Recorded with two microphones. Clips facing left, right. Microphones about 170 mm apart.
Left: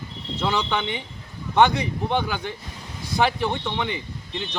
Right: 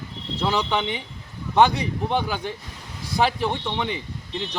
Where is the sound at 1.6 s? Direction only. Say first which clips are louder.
Even; 35° right (ahead or behind).